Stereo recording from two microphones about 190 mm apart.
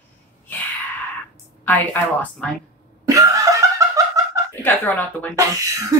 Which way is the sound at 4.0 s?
20° right (ahead or behind).